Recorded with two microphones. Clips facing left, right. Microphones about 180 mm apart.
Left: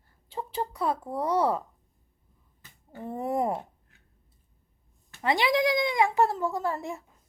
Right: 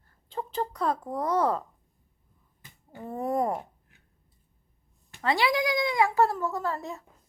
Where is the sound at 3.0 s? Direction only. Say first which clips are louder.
Even; 20° left (ahead or behind).